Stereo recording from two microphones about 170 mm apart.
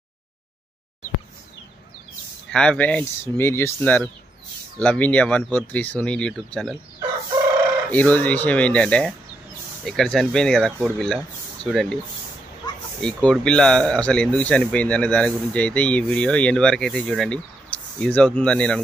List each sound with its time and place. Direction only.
2.5 s speech: 5° left (ahead or behind)
7.9 s speech: 10° left (ahead or behind)
12.6 s a sound: 25° left (ahead or behind)
13.0 s speech: 5° left (ahead or behind)